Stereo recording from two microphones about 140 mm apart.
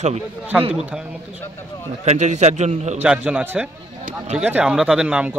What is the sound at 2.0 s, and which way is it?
A man's voice, 55° right (ahead or behind).